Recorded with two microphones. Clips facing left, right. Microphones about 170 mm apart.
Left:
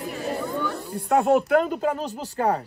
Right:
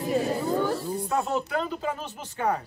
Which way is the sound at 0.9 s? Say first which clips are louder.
Left 7 dB; 65° left (ahead or behind).